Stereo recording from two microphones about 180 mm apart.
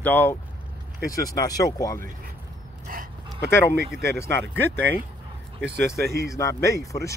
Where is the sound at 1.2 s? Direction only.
20° left (ahead or behind).